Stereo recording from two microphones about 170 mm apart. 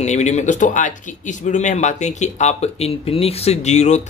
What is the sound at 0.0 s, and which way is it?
Speech, 40° left (ahead or behind).